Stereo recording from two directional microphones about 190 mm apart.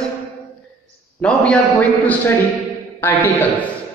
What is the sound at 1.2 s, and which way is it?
A man's voice, 5° left (ahead or behind).